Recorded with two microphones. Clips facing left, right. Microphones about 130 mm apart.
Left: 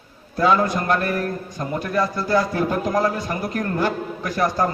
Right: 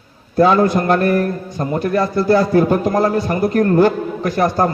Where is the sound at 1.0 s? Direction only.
55° right (ahead or behind).